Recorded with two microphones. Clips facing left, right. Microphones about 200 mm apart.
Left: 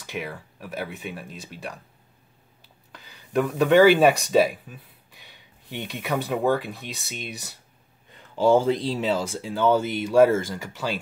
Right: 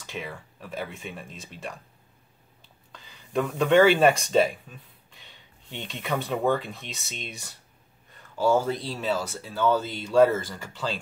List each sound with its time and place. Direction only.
0.0 s speech: 10° left (ahead or behind)
2.9 s speech: 5° left (ahead or behind)
8.4 s speech: 20° left (ahead or behind)